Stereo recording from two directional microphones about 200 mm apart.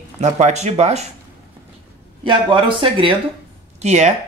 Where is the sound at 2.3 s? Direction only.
25° right (ahead or behind).